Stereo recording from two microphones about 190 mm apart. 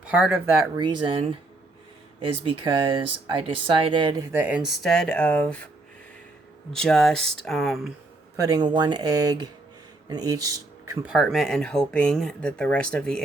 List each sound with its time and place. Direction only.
0.1 s speech: 10° right (ahead or behind)
0.8 s speech: 25° right (ahead or behind)
2.4 s speech: 25° right (ahead or behind)
4.3 s speech: 10° right (ahead or behind); by 5.6 s 5° left (ahead or behind)
6.7 s speech: 5° left (ahead or behind)
8.4 s speech: 20° right (ahead or behind)
11.0 s speech: centre (ahead or behind)